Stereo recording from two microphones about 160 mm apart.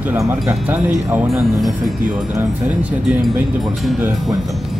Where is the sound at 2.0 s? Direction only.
20° right (ahead or behind).